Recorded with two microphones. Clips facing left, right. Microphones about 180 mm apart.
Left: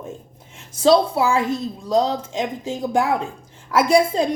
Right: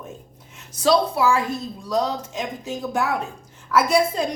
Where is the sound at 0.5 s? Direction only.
25° left (ahead or behind).